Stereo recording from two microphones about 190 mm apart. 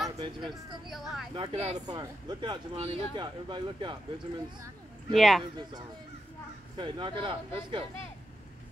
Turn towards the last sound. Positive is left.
turn(degrees=-25)  # may be behind; listen again after turning